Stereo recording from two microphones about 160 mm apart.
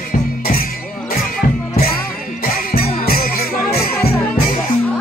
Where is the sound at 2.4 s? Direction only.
65° left (ahead or behind).